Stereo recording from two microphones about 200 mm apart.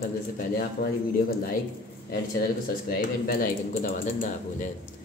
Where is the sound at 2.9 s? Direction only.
50° left (ahead or behind).